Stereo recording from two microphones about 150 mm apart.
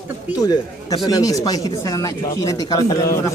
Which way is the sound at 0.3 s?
25° left (ahead or behind).